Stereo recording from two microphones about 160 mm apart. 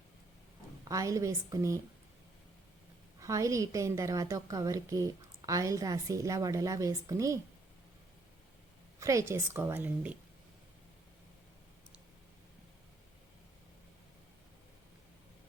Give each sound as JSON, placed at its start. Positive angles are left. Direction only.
{"t": 0.9, "sound": "a woman's voice", "side_deg": -20}
{"t": 3.2, "sound": "a woman's voice", "side_deg": -20}
{"t": 9.0, "sound": "a woman's voice", "side_deg": -20}